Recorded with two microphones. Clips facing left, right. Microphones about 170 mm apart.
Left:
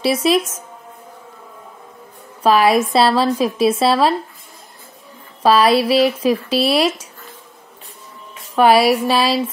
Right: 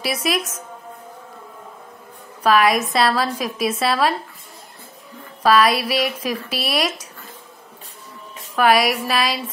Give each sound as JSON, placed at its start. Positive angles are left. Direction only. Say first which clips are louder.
{"t": 0.0, "sound": "speech", "louder": "left 7 dB", "side_deg": 30}
{"t": 2.4, "sound": "speech", "louder": "left 3 dB", "side_deg": 30}
{"t": 5.4, "sound": "speech", "louder": "left 3 dB", "side_deg": 30}
{"t": 8.5, "sound": "speech", "louder": "left 5 dB", "side_deg": 30}